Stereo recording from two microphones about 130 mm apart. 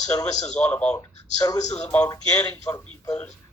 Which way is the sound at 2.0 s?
30° left (ahead or behind).